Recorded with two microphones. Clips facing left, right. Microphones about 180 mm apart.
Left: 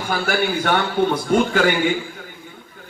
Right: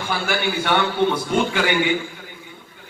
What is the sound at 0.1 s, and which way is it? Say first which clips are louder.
A man's voice: left 3 dB; 45° left (ahead or behind).